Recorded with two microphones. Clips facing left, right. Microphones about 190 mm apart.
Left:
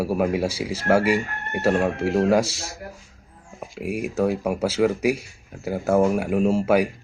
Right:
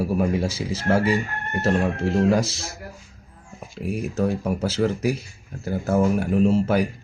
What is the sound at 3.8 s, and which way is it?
Speech, 10° left (ahead or behind).